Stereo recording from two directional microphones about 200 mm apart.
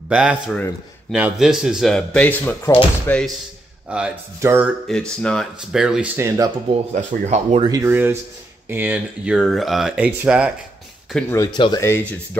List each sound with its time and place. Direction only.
0.1 s speech: 5° right (ahead or behind); by 3.2 s 10° left (ahead or behind)
3.9 s speech: 10° right (ahead or behind)
4.9 s speech: centre (ahead or behind); by 6.5 s 15° right (ahead or behind)
6.9 s speech: 35° right (ahead or behind)
7.6 s speech: 15° right (ahead or behind)
11.1 s speech: 15° left (ahead or behind)